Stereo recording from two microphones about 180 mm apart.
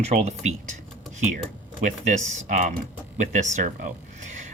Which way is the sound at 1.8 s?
45° right (ahead or behind).